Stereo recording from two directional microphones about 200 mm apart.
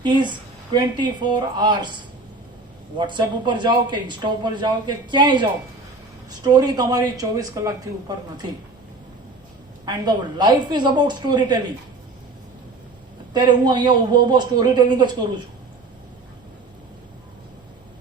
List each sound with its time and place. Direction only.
0.0 s speech: 20° right (ahead or behind)
3.0 s speech: 20° right (ahead or behind)
9.8 s speech: 20° right (ahead or behind)
13.3 s speech: 20° right (ahead or behind)